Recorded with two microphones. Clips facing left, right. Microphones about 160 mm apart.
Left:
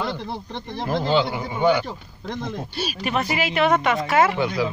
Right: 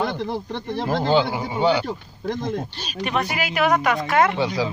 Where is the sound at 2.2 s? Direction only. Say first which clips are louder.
Right 4 dB; 60° right (ahead or behind).